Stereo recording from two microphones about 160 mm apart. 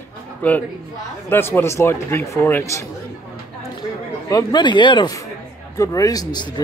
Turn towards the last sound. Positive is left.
turn(degrees=25)  # may be behind; listen again after turning